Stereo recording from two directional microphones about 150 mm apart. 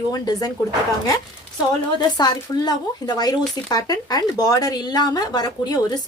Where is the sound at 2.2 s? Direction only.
25° left (ahead or behind).